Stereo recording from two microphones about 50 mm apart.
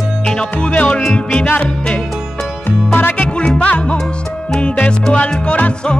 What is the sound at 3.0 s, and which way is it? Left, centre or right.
Music, left.